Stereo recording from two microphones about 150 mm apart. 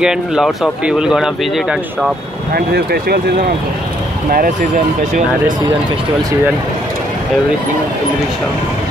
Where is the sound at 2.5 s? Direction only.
90° right.